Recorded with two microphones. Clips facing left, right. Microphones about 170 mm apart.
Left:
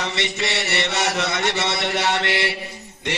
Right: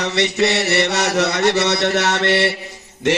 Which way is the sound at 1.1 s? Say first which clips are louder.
Right 7 dB; 70° right (ahead or behind).